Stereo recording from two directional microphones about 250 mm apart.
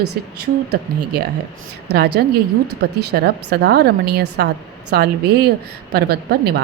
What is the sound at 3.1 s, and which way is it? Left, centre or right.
A woman's voice, right.